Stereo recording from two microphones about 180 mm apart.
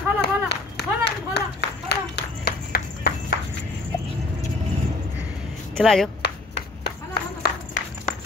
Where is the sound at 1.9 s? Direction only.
65° left (ahead or behind).